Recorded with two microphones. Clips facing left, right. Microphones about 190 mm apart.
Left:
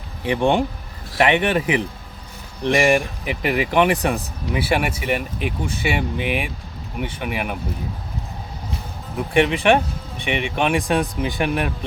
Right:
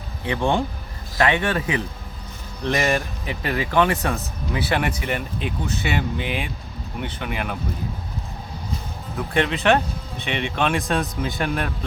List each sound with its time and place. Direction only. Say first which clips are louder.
0.3 s speech: left 4 dB; 15° left (ahead or behind)
9.1 s speech: left 4 dB; 15° left (ahead or behind)